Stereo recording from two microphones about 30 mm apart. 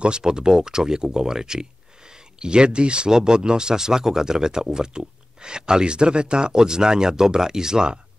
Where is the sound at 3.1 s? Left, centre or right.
Right.